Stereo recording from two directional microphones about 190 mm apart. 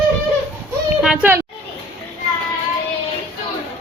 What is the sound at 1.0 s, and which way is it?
Speech, 5° right (ahead or behind).